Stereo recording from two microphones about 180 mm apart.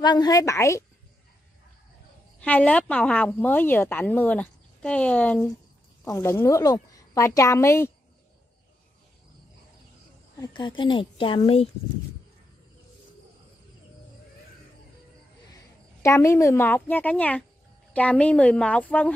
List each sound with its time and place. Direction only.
0.0 s speech: 25° left (ahead or behind)
2.4 s speech: 10° left (ahead or behind)
10.4 s speech: 25° left (ahead or behind)
16.0 s speech: 15° left (ahead or behind)